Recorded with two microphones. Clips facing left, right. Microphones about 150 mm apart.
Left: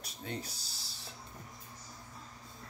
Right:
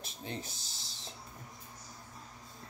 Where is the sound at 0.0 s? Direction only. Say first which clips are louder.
Even; 25° right (ahead or behind).